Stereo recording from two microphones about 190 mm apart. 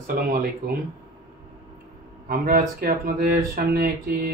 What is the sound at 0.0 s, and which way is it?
Speech, 45° right (ahead or behind).